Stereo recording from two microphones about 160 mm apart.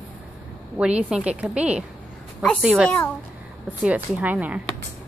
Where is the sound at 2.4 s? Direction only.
5° left (ahead or behind).